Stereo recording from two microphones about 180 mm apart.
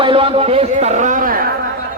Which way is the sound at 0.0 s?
30° right (ahead or behind).